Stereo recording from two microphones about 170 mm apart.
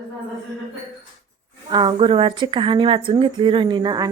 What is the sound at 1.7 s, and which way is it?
A woman's voice, 30° right (ahead or behind).